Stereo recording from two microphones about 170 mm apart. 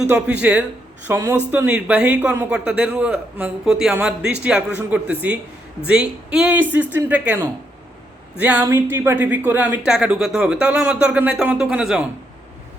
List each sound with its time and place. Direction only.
0.0 s speech: 5° right (ahead or behind)